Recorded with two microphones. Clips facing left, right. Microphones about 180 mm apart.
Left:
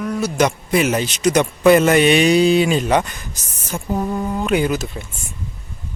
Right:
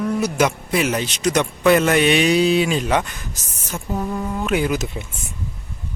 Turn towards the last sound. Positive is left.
turn(degrees=-20)  # may be behind; listen again after turning